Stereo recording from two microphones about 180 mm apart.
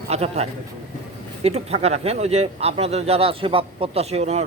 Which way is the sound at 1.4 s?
35° right (ahead or behind).